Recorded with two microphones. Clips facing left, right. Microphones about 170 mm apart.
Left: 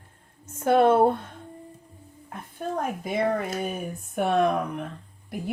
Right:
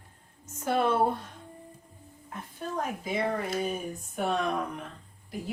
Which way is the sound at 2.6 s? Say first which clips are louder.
Left 6 dB; 50° left (ahead or behind).